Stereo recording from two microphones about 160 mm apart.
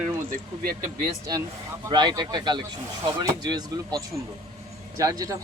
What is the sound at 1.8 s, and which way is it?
Speech, 25° right (ahead or behind).